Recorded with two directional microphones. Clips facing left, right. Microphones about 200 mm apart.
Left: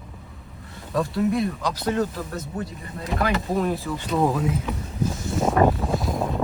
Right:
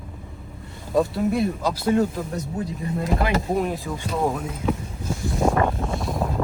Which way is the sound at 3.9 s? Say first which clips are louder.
Left 1 dB; 20° right (ahead or behind).